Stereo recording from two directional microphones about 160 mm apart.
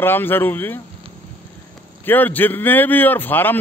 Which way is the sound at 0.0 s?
15° left (ahead or behind).